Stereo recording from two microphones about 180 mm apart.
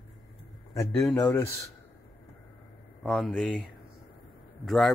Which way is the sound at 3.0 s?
5° left (ahead or behind).